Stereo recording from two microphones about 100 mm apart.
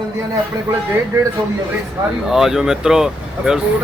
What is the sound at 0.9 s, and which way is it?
Speech, 30° right (ahead or behind).